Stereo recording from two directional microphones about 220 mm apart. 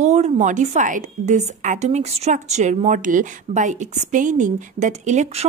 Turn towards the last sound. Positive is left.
turn(degrees=-30)  # may be behind; listen again after turning